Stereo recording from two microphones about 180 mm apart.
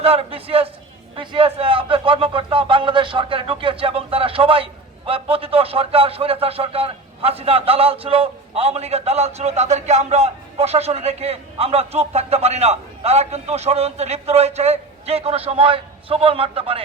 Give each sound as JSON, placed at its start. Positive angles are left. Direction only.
{"t": 0.0, "sound": "a man's voice", "side_deg": -35}